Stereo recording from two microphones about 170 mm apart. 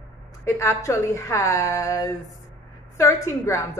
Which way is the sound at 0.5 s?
15° left (ahead or behind).